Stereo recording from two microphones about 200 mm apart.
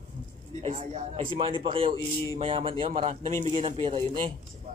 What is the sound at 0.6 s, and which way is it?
Speech, 30° right (ahead or behind).